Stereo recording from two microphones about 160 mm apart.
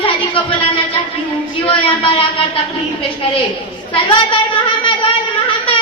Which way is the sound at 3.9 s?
35° left (ahead or behind).